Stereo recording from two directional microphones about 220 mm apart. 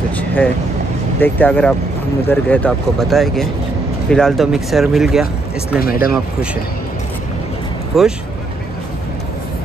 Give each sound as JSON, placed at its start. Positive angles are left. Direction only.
{"t": 1.2, "sound": "speech", "side_deg": 10}
{"t": 5.8, "sound": "speech", "side_deg": 45}
{"t": 7.9, "sound": "speech", "side_deg": 0}